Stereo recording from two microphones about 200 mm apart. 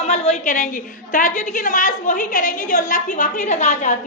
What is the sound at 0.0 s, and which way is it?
A woman's voice, 35° left (ahead or behind).